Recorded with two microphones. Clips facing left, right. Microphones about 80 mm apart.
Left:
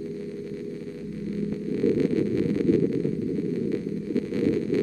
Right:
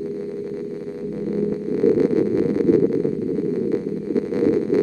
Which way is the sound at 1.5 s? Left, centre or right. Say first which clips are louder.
Right 5 dB; right.